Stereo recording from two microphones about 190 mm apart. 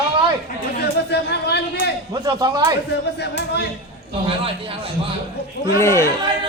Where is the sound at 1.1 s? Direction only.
60° left (ahead or behind).